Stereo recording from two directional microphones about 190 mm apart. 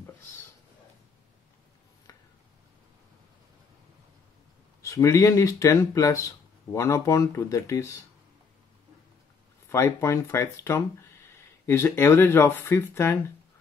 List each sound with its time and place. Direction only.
4.8 s speech: 15° left (ahead or behind)
9.7 s speech: 15° left (ahead or behind)